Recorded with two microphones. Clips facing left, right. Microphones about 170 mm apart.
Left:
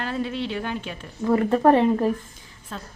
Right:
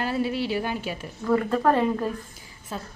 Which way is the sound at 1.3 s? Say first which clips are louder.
Left 4 dB; 25° left (ahead or behind).